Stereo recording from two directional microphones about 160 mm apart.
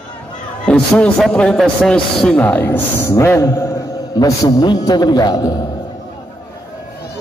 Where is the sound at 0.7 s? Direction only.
5° left (ahead or behind); by 5.5 s 25° left (ahead or behind).